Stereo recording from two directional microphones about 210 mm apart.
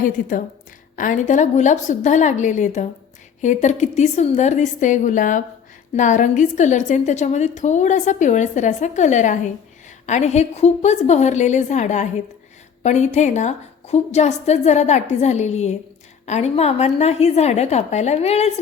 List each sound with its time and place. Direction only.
0.0 s a woman's voice: 40° left (ahead or behind)